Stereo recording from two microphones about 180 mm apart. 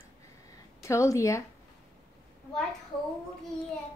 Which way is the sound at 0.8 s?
15° left (ahead or behind).